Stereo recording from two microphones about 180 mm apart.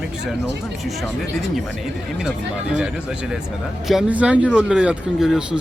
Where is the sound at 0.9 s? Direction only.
Centre (ahead or behind).